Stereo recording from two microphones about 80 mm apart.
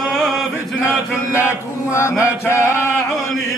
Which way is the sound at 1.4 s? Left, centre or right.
Left.